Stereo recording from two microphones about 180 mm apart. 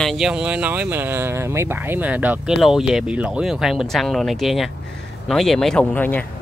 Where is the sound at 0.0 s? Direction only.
Centre (ahead or behind).